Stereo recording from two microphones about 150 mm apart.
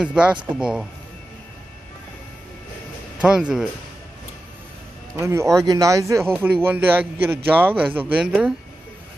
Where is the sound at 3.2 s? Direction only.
5° right (ahead or behind).